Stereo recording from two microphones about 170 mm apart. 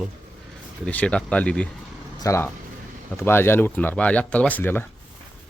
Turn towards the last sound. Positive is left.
turn(degrees=10)  # may be behind; listen again after turning